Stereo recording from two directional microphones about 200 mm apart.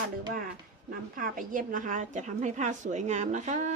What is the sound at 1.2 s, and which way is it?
A woman's voice, 40° right (ahead or behind).